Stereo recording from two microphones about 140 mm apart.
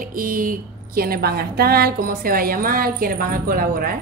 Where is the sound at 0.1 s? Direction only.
80° right.